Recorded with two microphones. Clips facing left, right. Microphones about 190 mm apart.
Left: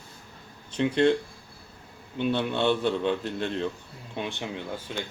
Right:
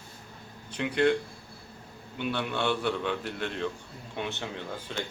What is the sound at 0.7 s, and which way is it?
Speech, 25° left (ahead or behind).